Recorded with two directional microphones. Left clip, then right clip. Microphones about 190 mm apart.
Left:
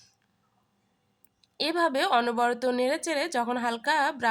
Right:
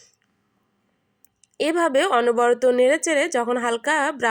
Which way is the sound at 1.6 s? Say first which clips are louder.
Right 6 dB; centre (ahead or behind).